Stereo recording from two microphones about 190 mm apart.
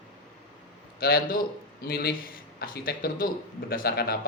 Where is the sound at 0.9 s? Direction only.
50° left (ahead or behind).